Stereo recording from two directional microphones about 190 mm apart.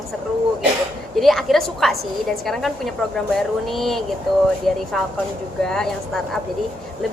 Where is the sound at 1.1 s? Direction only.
Centre (ahead or behind).